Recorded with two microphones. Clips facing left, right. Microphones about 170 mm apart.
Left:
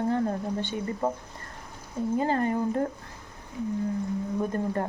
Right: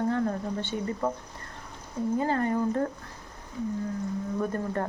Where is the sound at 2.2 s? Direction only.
20° left (ahead or behind).